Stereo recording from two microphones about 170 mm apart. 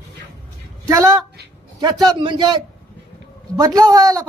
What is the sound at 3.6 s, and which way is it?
Speech, 20° right (ahead or behind).